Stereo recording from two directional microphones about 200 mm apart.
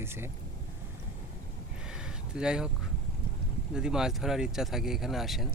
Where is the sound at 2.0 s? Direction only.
5° right (ahead or behind).